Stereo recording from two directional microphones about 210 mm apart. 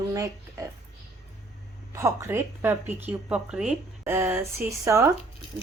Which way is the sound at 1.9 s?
15° right (ahead or behind).